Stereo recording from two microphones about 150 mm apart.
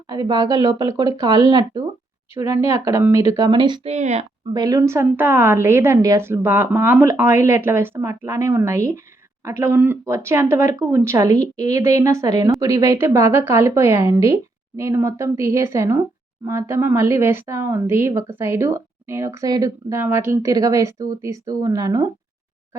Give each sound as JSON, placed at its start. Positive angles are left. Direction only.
{"t": 0.1, "sound": "speech", "side_deg": -25}
{"t": 3.8, "sound": "speech", "side_deg": -45}
{"t": 4.5, "sound": "a woman's voice", "side_deg": -25}